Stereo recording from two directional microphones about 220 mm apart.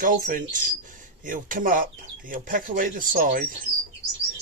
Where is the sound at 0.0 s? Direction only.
40° right (ahead or behind).